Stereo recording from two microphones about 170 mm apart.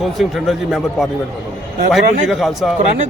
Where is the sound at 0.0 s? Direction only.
Centre (ahead or behind).